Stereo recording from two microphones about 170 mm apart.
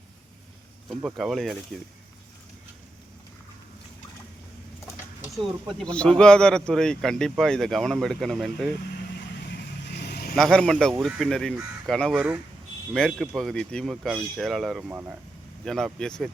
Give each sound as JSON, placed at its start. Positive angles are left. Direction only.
{"t": 0.9, "sound": "speech", "side_deg": 0}
{"t": 5.8, "sound": "speech", "side_deg": 5}
{"t": 9.5, "sound": "vehicle", "side_deg": 75}
{"t": 10.3, "sound": "speech", "side_deg": 5}
{"t": 15.6, "sound": "speech", "side_deg": 5}